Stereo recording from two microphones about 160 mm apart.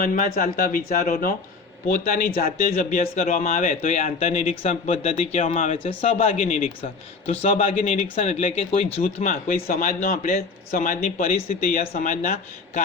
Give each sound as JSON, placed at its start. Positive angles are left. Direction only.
{"t": 0.0, "sound": "speech", "side_deg": 60}
{"t": 9.2, "sound": "speech", "side_deg": 60}